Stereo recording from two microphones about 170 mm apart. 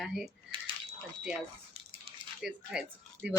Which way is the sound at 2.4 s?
5° right (ahead or behind).